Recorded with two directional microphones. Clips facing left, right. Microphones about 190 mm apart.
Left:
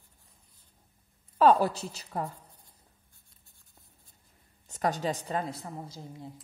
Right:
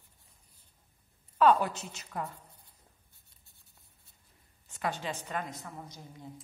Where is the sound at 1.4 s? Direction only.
35° left (ahead or behind).